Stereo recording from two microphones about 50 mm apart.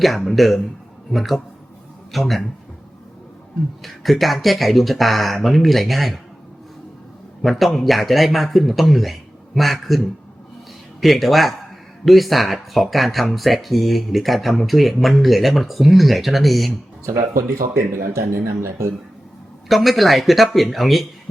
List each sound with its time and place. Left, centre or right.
0.0 s speech: centre
3.8 s speech: centre
7.6 s speech: centre
11.0 s speech: centre
17.7 s speech: right
19.6 s speech: centre